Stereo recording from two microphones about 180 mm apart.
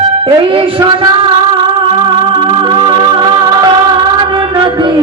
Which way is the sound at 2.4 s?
25° right (ahead or behind).